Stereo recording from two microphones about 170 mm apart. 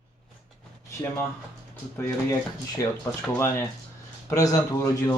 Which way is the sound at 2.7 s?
20° left (ahead or behind).